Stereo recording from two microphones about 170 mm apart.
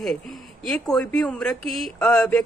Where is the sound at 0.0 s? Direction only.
Centre (ahead or behind).